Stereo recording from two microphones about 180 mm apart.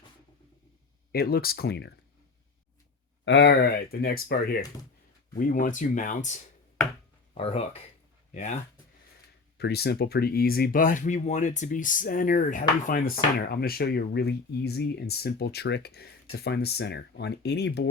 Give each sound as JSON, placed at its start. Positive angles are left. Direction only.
{"t": 1.1, "sound": "speech", "side_deg": 60}
{"t": 3.2, "sound": "speech", "side_deg": 75}
{"t": 9.6, "sound": "speech", "side_deg": 65}